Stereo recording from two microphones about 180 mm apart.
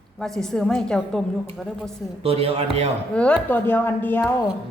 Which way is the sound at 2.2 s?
35° right (ahead or behind).